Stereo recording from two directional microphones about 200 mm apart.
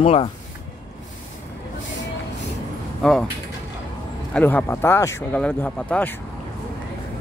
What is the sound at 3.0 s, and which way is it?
Speech, 5° left (ahead or behind).